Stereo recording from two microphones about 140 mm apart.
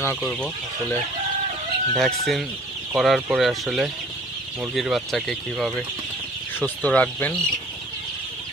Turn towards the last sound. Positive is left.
turn(degrees=10)  # may be behind; listen again after turning